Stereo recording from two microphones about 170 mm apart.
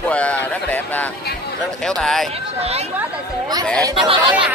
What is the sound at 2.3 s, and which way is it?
Speech, 35° right (ahead or behind).